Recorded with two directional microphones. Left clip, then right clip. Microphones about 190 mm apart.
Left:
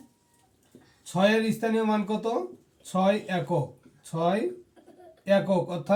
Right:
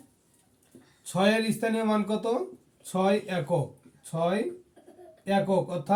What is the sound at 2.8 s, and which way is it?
Speech, 15° right (ahead or behind).